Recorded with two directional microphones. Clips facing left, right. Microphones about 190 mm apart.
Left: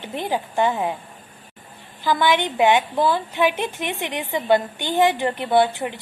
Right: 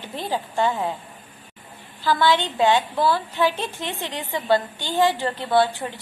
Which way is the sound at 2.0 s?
20° left (ahead or behind).